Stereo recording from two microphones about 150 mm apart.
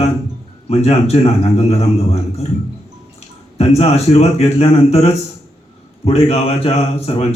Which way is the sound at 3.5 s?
45° left (ahead or behind).